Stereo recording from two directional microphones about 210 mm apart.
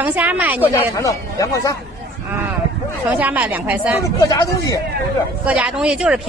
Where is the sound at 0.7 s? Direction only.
15° left (ahead or behind).